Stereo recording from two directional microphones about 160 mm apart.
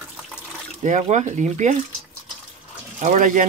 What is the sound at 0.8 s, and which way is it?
Speech, 45° right (ahead or behind).